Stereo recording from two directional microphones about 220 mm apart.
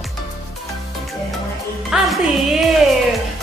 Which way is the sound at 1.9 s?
Centre (ahead or behind).